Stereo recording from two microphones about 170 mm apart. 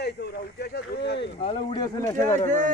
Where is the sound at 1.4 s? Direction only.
35° left (ahead or behind).